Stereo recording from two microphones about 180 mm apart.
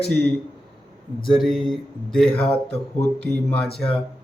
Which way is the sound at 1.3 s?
Centre (ahead or behind).